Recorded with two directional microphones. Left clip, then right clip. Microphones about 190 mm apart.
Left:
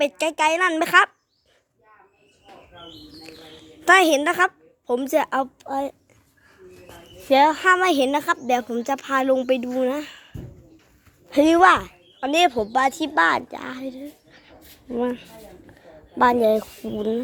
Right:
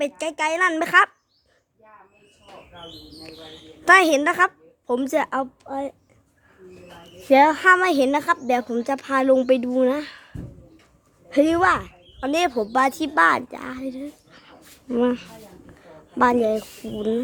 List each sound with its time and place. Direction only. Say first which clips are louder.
0.0 s a woman's voice: left 4 dB; 10° left (ahead or behind)
3.8 s a woman's voice: right 1 dB; 5° left (ahead or behind)
7.3 s speech: right 2 dB; 10° right (ahead or behind); by 10.2 s 5° left (ahead or behind)
11.4 s a woman's voice: left 8 dB; 15° left (ahead or behind)
12.2 s speech: left 3 dB; 5° left (ahead or behind)
13.9 s a sound: right 3 dB; 5° right (ahead or behind)
15.8 s a sound: left 1 dB; centre (ahead or behind)
16.4 s a woman's voice: left 3 dB; 15° left (ahead or behind)
17.0 s speech: right 1 dB; centre (ahead or behind)